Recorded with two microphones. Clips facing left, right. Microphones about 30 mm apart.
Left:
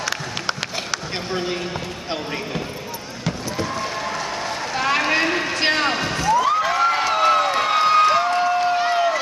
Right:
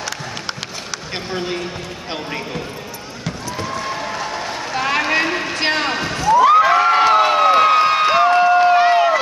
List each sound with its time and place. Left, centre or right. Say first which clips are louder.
1.3 s a man's voice: right 1 dB; centre
3.3 s a sound: even; centre
6.6 s crowd: right 6 dB; centre